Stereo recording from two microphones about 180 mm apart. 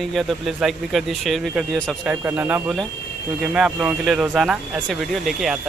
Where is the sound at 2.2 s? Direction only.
10° right (ahead or behind).